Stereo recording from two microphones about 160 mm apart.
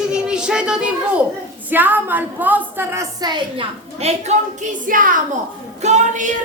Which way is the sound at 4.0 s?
45° right (ahead or behind).